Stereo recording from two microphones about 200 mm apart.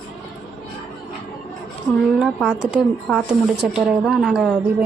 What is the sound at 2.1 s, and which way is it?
Speech, centre (ahead or behind).